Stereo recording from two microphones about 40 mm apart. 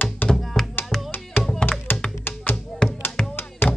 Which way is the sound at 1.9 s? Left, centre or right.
Left.